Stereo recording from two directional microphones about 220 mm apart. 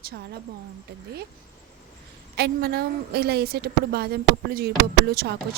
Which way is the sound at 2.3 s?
45° right (ahead or behind).